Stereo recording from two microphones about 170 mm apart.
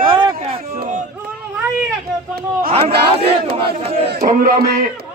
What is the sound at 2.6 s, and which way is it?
Speech, 35° right (ahead or behind).